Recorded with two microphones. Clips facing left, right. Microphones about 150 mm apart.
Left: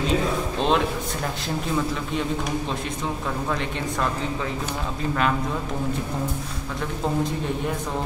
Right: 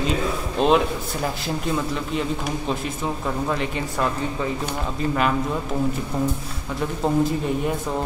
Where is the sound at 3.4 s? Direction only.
5° right (ahead or behind).